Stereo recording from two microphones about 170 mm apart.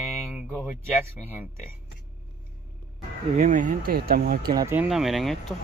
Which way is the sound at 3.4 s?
45° right (ahead or behind).